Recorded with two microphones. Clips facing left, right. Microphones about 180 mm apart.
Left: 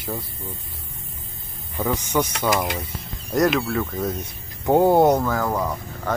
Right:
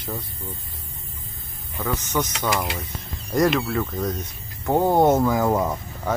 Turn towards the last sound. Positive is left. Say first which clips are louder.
# right 3 dB
turn(degrees=-20)  # may be behind; listen again after turning